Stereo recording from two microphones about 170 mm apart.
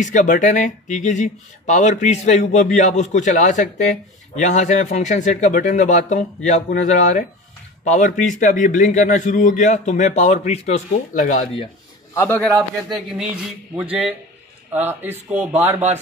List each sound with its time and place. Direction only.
0.0 s speech: 45° left (ahead or behind)
12.1 s a man's voice: 15° left (ahead or behind)
13.2 s a man's voice: 5° right (ahead or behind)